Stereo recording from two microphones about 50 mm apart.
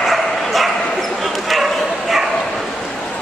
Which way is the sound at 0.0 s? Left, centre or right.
Centre.